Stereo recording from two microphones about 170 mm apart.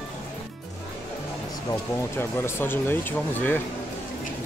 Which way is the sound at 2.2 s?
15° left (ahead or behind).